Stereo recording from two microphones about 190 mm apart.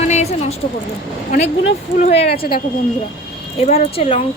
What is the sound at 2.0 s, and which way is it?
Speech, 35° left (ahead or behind).